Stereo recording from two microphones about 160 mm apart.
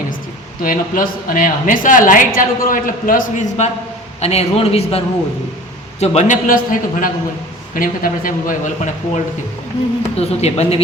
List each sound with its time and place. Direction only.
0.6 s a woman's voice: 60° left (ahead or behind)
10.2 s a man's voice: 40° left (ahead or behind)